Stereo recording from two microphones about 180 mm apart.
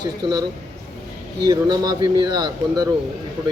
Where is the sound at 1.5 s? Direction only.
25° right (ahead or behind).